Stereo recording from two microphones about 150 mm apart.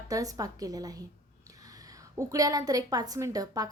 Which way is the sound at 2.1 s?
25° right (ahead or behind).